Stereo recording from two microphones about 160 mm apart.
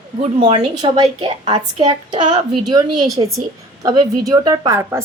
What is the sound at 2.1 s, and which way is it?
Speech, 50° right (ahead or behind).